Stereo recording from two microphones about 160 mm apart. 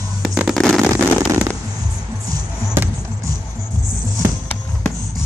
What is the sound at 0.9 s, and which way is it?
Fireworks, 15° right (ahead or behind).